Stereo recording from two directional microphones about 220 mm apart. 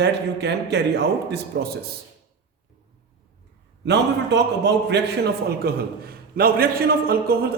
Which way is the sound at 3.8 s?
50° right (ahead or behind).